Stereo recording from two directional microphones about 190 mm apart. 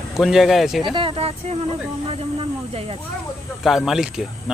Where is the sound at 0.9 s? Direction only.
30° right (ahead or behind).